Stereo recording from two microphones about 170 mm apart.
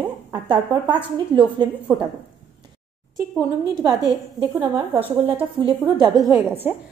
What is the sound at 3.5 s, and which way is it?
Speech, 20° right (ahead or behind).